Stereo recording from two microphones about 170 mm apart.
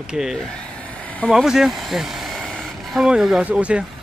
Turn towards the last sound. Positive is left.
turn(degrees=-5)  # may be behind; listen again after turning